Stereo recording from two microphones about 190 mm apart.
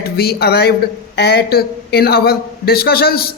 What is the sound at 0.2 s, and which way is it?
A man's voice, 55° left (ahead or behind).